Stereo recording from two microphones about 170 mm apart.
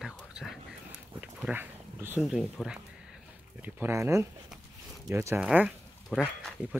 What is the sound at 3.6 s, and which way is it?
Speech, 15° right (ahead or behind).